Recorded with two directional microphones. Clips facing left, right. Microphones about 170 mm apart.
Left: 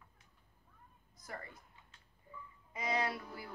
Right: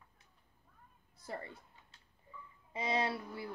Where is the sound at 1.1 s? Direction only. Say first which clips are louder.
Right 4 dB; 30° right (ahead or behind).